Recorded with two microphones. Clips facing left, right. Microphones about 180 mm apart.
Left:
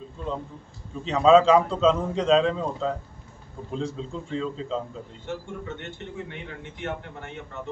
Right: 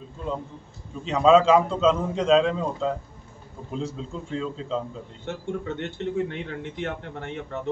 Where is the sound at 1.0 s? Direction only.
Centre (ahead or behind).